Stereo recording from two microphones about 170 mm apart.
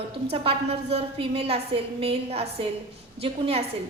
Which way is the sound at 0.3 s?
35° right (ahead or behind).